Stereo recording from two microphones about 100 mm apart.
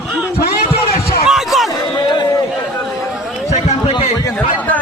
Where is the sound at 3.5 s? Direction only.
90° left.